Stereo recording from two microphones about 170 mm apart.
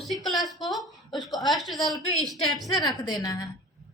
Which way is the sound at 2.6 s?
25° left (ahead or behind).